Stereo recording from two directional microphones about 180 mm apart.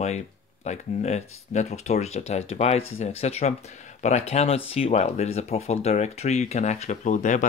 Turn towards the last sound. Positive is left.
turn(degrees=45)  # may be behind; listen again after turning